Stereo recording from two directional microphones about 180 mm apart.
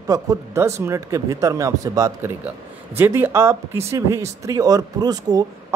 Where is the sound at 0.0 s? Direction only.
15° right (ahead or behind).